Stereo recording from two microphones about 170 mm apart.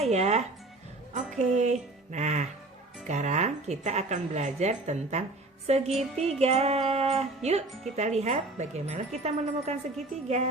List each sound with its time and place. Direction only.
0.0 s music: 40° right (ahead or behind)
3.1 s a woman's voice: 45° right (ahead or behind)